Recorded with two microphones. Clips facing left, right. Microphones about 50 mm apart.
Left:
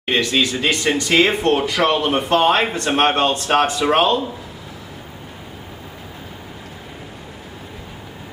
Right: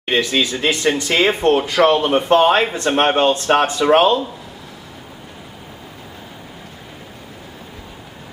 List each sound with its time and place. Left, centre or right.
0.0 s speech: centre